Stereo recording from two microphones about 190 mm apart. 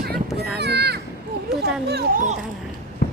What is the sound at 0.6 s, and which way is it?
A child's voice, 60° right (ahead or behind).